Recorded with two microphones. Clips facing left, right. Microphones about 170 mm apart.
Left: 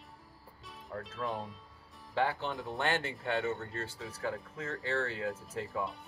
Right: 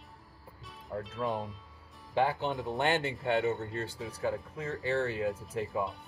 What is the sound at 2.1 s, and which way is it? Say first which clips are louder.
Speech: right 3 dB; 20° right (ahead or behind).